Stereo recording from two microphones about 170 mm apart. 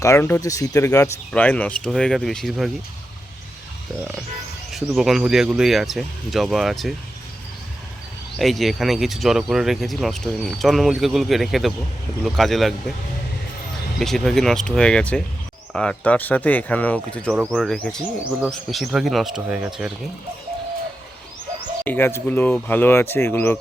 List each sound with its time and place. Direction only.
0.0 s speech: 15° left (ahead or behind)
1.3 s speech: 10° left (ahead or behind)
4.9 s speech: 5° right (ahead or behind)
8.4 s speech: centre (ahead or behind)
14.0 s speech: 5° left (ahead or behind)
17.3 s speech: 5° right (ahead or behind)
21.8 s speech: 10° left (ahead or behind)